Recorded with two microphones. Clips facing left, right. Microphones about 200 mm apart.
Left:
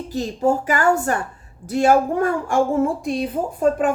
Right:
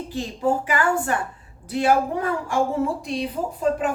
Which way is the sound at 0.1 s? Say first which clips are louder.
Left 4 dB; 40° left (ahead or behind).